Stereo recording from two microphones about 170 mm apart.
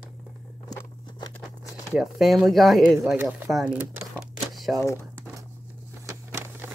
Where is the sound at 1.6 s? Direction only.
Centre (ahead or behind).